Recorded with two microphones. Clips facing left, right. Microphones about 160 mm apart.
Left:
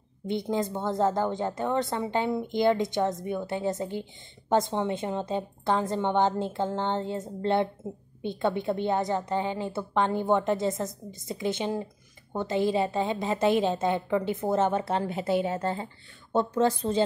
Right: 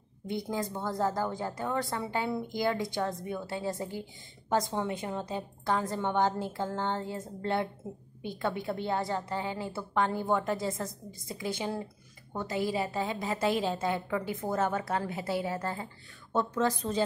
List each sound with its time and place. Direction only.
0.3 s a woman's voice: 25° left (ahead or behind)